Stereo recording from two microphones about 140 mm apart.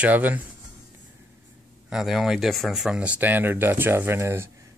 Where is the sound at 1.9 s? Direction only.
5° right (ahead or behind).